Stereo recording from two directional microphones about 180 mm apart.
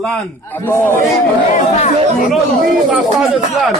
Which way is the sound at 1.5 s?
40° left (ahead or behind).